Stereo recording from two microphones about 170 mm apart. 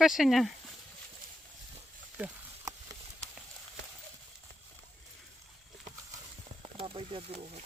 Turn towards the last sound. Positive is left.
turn(degrees=-35)  # may be behind; listen again after turning